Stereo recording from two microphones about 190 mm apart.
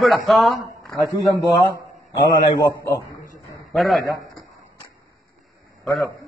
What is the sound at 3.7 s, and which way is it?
Speech, centre (ahead or behind).